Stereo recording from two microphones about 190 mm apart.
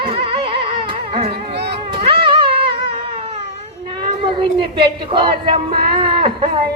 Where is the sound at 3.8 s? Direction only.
25° right (ahead or behind).